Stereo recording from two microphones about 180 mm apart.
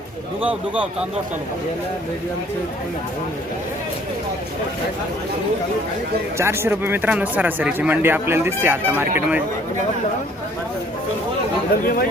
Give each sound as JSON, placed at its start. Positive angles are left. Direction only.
{"t": 6.3, "sound": "speech", "side_deg": -15}
{"t": 11.8, "sound": "speech", "side_deg": 55}